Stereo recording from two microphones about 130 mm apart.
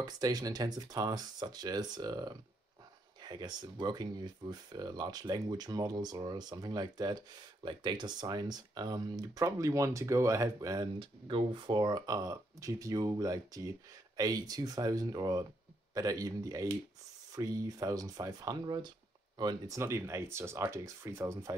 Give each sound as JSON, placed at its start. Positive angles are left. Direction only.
{"t": 0.0, "sound": "speech", "side_deg": -30}
{"t": 11.0, "sound": "speech", "side_deg": -40}
{"t": 19.8, "sound": "speech", "side_deg": -20}